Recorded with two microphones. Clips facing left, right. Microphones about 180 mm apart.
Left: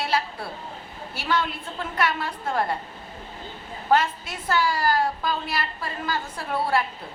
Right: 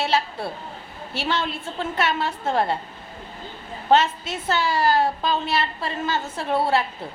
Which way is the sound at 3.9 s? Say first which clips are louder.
Right 3 dB; 25° right (ahead or behind).